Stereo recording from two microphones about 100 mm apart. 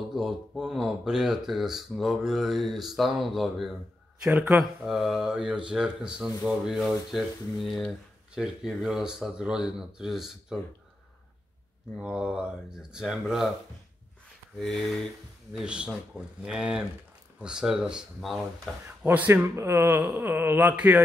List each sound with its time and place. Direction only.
0.1 s speech: 5° right (ahead or behind)
12.0 s speech: 10° right (ahead or behind)
14.6 s speech: 5° left (ahead or behind)
15.5 s speech: 10° right (ahead or behind)
19.0 s speech: 20° right (ahead or behind)